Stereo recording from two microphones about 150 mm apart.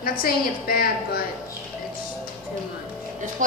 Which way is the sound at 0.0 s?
85° left.